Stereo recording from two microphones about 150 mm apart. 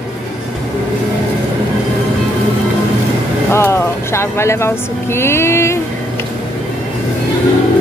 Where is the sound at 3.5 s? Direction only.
15° left (ahead or behind).